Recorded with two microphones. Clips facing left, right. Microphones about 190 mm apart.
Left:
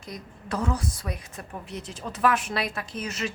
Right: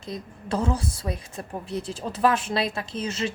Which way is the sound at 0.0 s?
25° right (ahead or behind).